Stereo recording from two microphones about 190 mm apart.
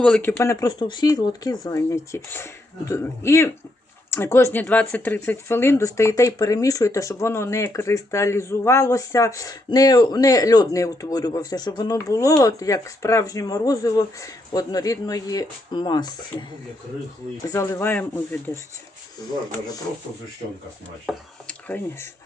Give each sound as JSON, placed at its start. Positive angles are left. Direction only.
{"t": 0.0, "sound": "speech", "side_deg": 10}
{"t": 17.5, "sound": "speech", "side_deg": 15}
{"t": 21.1, "sound": "speech", "side_deg": 5}